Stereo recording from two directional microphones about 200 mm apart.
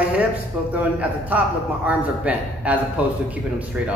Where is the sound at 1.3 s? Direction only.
5° right (ahead or behind).